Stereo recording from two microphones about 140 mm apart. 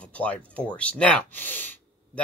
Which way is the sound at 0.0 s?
10° left (ahead or behind).